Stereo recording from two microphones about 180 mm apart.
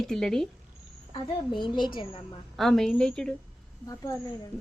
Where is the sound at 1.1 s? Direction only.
25° left (ahead or behind).